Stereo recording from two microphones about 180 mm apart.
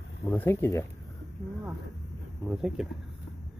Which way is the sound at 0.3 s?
10° left (ahead or behind).